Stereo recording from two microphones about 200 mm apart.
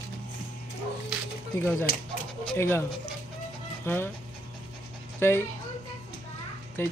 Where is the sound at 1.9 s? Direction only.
50° left (ahead or behind).